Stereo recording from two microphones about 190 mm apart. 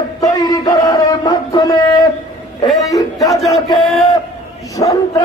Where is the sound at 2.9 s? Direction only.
20° left (ahead or behind).